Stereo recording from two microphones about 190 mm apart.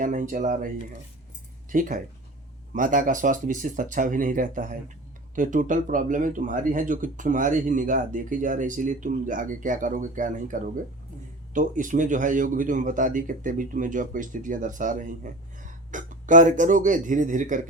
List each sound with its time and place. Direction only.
0.0 s speech: 45° right (ahead or behind)
1.7 s speech: 45° right (ahead or behind)